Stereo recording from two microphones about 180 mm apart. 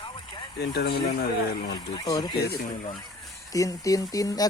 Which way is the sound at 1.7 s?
20° left (ahead or behind).